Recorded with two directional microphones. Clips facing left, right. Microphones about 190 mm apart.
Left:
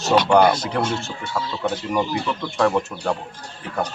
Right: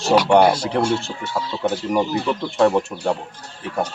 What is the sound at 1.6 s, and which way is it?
Speech, 15° right (ahead or behind).